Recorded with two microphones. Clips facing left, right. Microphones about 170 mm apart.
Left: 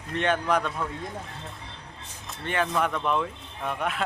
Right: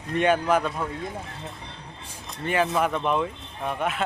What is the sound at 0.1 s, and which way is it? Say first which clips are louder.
Speech: right 4 dB; 10° right (ahead or behind).